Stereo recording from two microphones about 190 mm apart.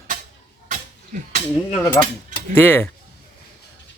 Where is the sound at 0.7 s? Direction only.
45° right (ahead or behind).